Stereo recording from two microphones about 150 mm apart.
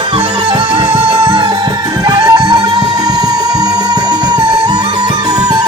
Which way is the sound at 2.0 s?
25° right (ahead or behind).